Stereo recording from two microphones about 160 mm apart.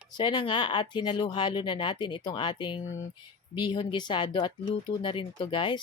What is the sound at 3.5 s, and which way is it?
Speech, 30° left (ahead or behind).